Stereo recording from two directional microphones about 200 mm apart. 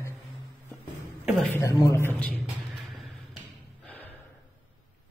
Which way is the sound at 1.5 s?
15° left (ahead or behind).